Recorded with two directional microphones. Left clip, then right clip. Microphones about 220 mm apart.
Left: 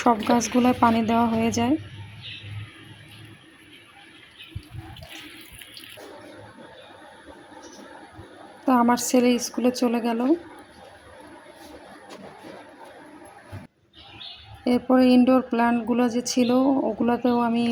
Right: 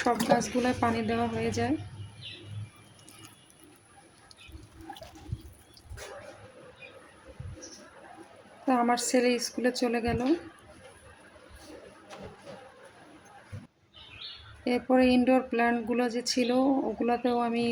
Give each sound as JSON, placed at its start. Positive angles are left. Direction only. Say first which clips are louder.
{"t": 0.6, "sound": "speech", "louder": "left 8 dB", "side_deg": 20}
{"t": 8.6, "sound": "speech", "louder": "left 6 dB", "side_deg": 15}
{"t": 14.6, "sound": "speech", "louder": "left 5 dB", "side_deg": 20}